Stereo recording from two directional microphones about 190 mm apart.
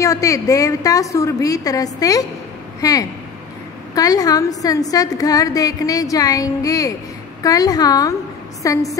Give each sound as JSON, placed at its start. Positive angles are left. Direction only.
{"t": 0.0, "sound": "a woman's voice", "side_deg": 15}